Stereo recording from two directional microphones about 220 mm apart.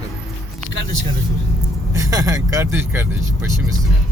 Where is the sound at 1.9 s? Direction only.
15° right (ahead or behind).